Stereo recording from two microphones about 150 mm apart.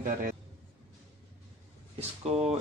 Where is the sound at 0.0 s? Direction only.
60° right (ahead or behind).